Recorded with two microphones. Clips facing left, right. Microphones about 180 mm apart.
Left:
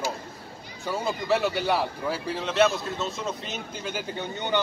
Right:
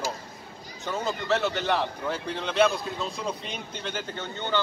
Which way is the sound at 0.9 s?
10° left (ahead or behind).